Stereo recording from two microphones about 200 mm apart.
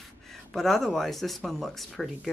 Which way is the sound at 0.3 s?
Centre (ahead or behind).